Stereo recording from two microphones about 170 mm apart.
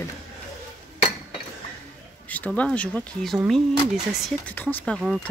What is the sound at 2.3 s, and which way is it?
Speech, 10° left (ahead or behind).